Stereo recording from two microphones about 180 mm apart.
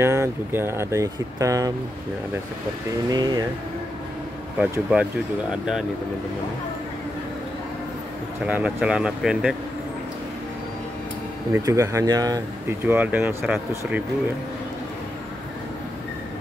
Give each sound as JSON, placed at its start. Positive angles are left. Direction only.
{"t": 0.0, "sound": "speech", "side_deg": -15}
{"t": 3.1, "sound": "speech", "side_deg": -20}
{"t": 4.6, "sound": "speech", "side_deg": -5}
{"t": 8.5, "sound": "speech", "side_deg": -5}
{"t": 11.5, "sound": "speech", "side_deg": -15}